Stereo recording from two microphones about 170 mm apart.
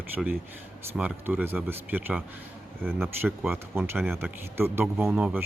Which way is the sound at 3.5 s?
10° right (ahead or behind).